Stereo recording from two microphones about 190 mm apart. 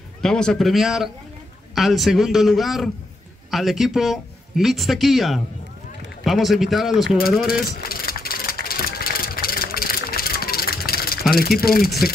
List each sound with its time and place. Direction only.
0.2 s speech: 5° left (ahead or behind)
7.4 s vehicle: 50° left (ahead or behind)